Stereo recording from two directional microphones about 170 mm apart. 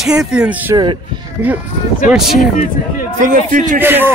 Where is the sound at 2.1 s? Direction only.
Centre (ahead or behind).